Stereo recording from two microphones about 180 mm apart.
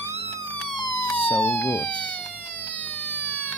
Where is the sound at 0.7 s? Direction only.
25° left (ahead or behind).